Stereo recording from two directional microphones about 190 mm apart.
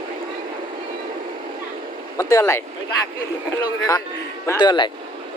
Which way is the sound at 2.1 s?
15° left (ahead or behind).